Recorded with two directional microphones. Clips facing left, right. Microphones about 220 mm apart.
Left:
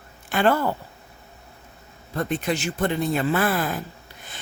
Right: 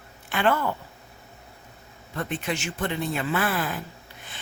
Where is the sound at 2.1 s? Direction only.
40° left (ahead or behind).